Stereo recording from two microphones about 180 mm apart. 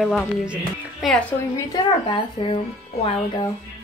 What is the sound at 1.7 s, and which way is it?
Speech, 25° left (ahead or behind).